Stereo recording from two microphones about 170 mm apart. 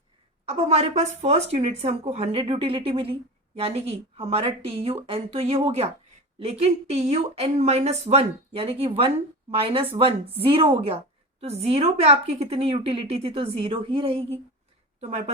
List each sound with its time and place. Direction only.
0.4 s speech: 35° right (ahead or behind)